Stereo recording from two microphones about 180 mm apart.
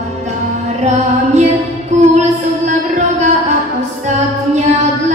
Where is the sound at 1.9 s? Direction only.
40° right (ahead or behind).